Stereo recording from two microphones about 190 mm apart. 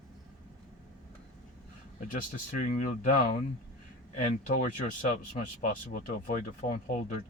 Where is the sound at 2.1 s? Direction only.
45° left (ahead or behind).